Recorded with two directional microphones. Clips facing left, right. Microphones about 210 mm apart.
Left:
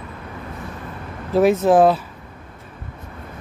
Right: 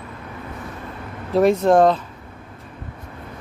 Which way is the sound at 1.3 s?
5° left (ahead or behind).